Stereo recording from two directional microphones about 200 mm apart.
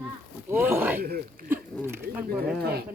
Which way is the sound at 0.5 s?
10° right (ahead or behind).